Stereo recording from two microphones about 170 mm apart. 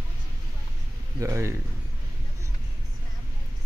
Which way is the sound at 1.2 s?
15° right (ahead or behind).